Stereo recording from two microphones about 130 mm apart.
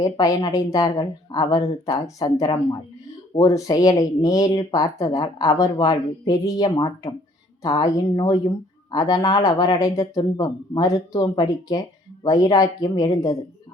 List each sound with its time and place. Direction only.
0.0 s speech: 30° left (ahead or behind)